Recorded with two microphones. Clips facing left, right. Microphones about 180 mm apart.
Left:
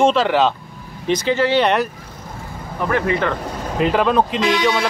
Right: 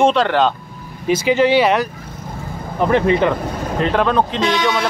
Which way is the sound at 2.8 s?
25° right (ahead or behind).